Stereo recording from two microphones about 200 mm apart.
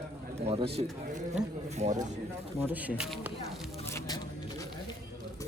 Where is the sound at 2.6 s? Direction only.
10° right (ahead or behind).